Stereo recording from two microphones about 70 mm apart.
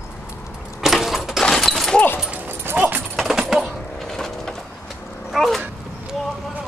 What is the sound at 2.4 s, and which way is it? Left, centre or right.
Dog, right.